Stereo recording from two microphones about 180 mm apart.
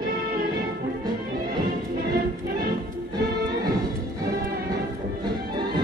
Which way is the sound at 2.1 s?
60° right (ahead or behind).